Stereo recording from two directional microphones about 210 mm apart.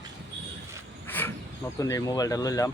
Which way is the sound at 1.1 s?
10° left (ahead or behind).